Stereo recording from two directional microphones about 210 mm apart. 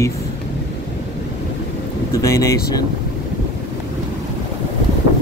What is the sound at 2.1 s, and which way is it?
Speech, 15° left (ahead or behind).